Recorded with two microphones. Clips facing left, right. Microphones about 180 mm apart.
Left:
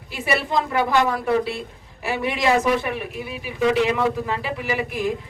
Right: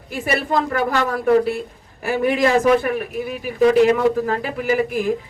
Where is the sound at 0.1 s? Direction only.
50° right (ahead or behind).